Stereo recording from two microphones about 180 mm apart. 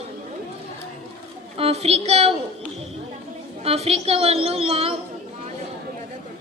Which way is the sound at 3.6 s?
35° right (ahead or behind).